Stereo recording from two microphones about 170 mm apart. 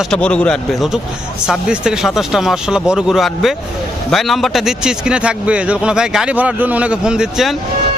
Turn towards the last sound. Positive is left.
turn(degrees=-5)  # may be behind; listen again after turning